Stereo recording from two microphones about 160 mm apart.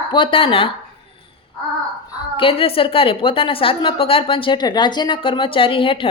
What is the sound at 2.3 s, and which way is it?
A woman's voice, 35° left (ahead or behind).